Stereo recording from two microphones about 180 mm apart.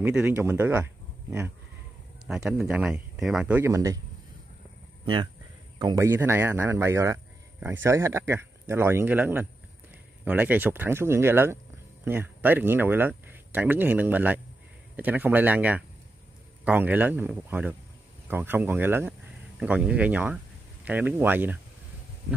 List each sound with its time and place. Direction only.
0.0 s speech: 10° right (ahead or behind)
2.2 s speech: 5° right (ahead or behind)
5.0 s speech: 25° right (ahead or behind); by 21.5 s 10° right (ahead or behind)